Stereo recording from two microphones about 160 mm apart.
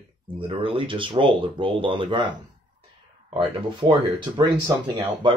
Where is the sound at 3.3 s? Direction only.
30° right (ahead or behind).